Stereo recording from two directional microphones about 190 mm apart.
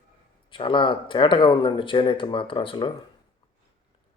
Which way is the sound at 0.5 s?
25° left (ahead or behind).